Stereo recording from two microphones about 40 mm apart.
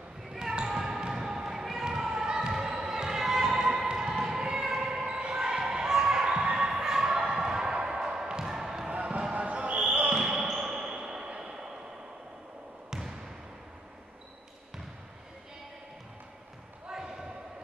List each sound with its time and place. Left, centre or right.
0.3 s basketball bounce: centre
7.3 s music: centre
8.8 s basketball bounce: right
10.2 s basketball bounce: centre